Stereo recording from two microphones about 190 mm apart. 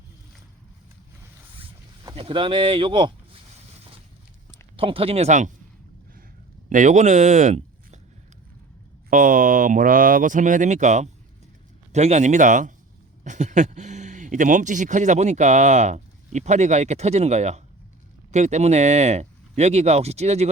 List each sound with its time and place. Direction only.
2.0 s speech: 30° right (ahead or behind)
4.8 s speech: 30° right (ahead or behind)
6.7 s speech: 40° right (ahead or behind)
9.0 s speech: 45° right (ahead or behind)